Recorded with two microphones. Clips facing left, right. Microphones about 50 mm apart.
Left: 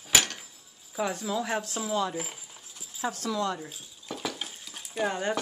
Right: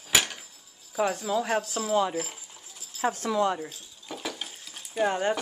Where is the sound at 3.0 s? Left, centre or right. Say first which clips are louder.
Right 4 dB; right.